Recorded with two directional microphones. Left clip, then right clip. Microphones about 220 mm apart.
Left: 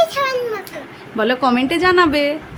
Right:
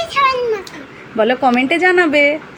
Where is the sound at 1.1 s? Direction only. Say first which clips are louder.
Right 3 dB; 5° left (ahead or behind).